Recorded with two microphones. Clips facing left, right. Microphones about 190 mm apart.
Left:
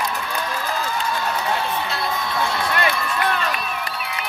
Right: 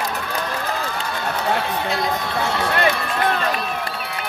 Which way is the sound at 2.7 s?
40° right (ahead or behind).